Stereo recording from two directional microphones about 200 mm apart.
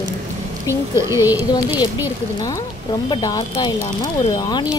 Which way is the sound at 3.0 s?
20° left (ahead or behind).